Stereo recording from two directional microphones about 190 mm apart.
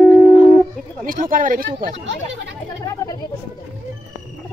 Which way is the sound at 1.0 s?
45° right (ahead or behind).